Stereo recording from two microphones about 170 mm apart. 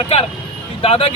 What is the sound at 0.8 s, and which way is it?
Speech, 35° left (ahead or behind).